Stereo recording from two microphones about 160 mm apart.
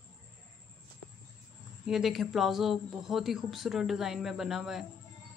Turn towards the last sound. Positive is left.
turn(degrees=0)  # may be behind; listen again after turning